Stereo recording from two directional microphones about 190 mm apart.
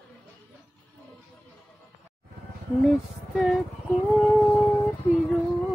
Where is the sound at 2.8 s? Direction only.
Centre (ahead or behind).